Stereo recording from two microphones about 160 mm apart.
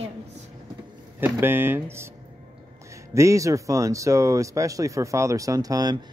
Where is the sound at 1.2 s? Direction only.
15° right (ahead or behind).